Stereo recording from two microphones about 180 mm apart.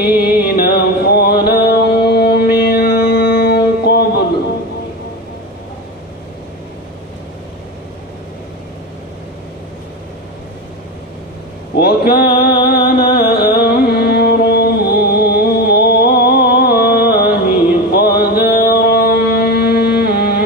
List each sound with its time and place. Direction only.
0.0 s music: 60° left (ahead or behind)
11.7 s a sound: 60° left (ahead or behind)
12.6 s music: 60° left (ahead or behind)